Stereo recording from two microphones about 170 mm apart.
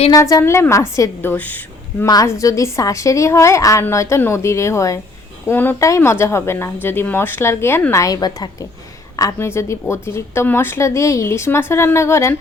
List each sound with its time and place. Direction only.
0.1 s a woman's voice: 20° left (ahead or behind)